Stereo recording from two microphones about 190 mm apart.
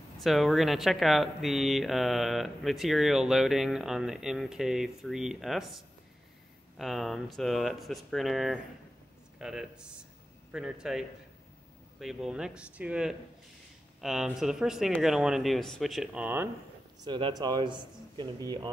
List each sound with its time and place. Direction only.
0.2 s speech: centre (ahead or behind)
17.0 s speech: 25° right (ahead or behind)